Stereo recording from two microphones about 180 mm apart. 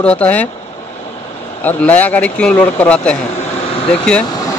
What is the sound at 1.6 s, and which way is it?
Speech, 10° left (ahead or behind).